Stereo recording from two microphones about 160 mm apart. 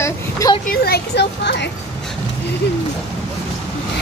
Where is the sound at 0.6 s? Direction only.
75° left (ahead or behind); by 1.7 s 90° left.